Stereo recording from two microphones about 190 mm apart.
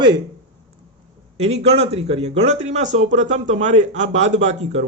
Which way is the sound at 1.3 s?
35° right (ahead or behind).